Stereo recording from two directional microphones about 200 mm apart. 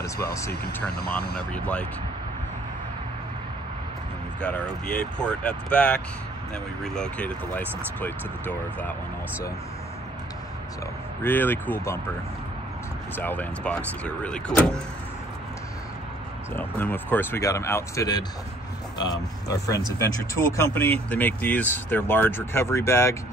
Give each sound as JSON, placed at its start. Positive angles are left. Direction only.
{"t": 0.0, "sound": "speech", "side_deg": 15}
{"t": 4.4, "sound": "speech", "side_deg": 5}
{"t": 11.2, "sound": "speech", "side_deg": 10}
{"t": 13.1, "sound": "speech", "side_deg": 10}
{"t": 16.5, "sound": "speech", "side_deg": 10}